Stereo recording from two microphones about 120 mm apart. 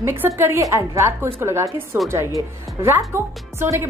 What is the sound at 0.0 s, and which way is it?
A woman's voice, 15° right (ahead or behind).